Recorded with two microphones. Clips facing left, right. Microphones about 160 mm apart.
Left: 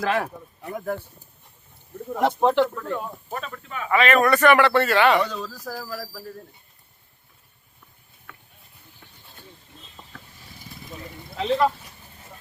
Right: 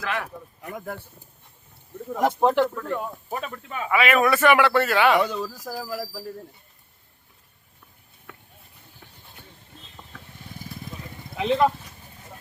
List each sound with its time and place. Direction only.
0.0 s speech: 35° left (ahead or behind)
2.0 s a man's voice: centre (ahead or behind); by 6.2 s 15° right (ahead or behind)
11.3 s speech: 15° right (ahead or behind)